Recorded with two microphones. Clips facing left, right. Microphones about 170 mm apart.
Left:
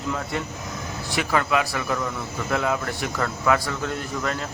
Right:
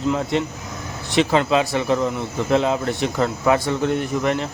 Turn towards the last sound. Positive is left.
turn(degrees=-25)  # may be behind; listen again after turning